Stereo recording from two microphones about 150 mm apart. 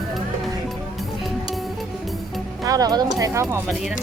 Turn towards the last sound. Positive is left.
turn(degrees=-25)  # may be behind; listen again after turning